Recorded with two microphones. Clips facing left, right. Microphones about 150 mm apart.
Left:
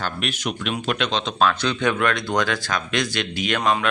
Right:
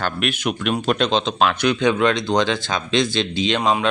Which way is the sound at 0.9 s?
35° right (ahead or behind).